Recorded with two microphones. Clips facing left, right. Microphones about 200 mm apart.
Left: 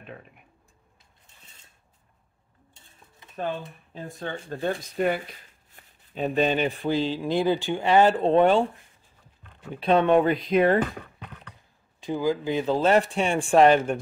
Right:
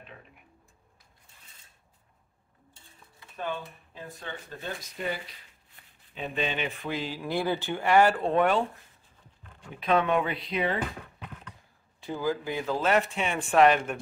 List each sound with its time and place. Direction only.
3.3 s speech: 35° left (ahead or behind)
4.5 s speech: 55° left (ahead or behind)
5.8 s a sound: 45° left (ahead or behind)
6.1 s speech: 40° left (ahead or behind)
7.2 s speech: 20° left (ahead or behind)
9.7 s speech: 30° left (ahead or behind); by 10.8 s 50° left (ahead or behind)
12.0 s speech: 15° left (ahead or behind)